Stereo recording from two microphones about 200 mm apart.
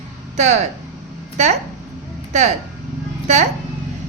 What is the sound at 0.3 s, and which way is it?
Speech, 35° right (ahead or behind).